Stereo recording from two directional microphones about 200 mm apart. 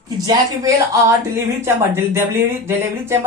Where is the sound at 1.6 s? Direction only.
10° right (ahead or behind).